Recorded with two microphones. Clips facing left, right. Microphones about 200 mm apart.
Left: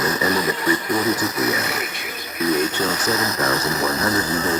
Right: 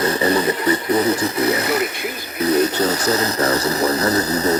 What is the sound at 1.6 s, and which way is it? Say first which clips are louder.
Speech: right 7 dB; 60° right (ahead or behind).